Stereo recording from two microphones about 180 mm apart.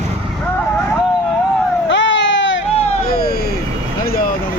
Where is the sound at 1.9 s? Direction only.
90° left.